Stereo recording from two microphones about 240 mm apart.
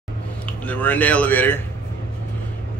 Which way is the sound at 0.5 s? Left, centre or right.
Centre.